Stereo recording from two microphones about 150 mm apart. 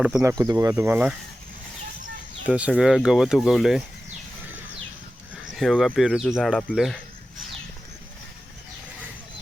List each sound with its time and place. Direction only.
0.0 s speech: 15° right (ahead or behind)
2.5 s speech: 5° right (ahead or behind)
5.5 s speech: centre (ahead or behind)